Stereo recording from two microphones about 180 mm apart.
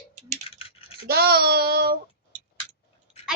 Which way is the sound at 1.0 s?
60° right (ahead or behind).